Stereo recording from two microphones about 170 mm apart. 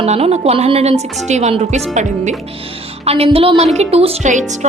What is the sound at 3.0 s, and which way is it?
A woman's voice, 35° right (ahead or behind).